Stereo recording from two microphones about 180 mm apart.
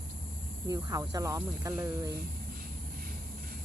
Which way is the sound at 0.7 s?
20° right (ahead or behind).